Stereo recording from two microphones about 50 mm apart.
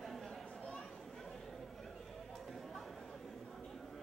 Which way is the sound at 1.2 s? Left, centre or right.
Centre.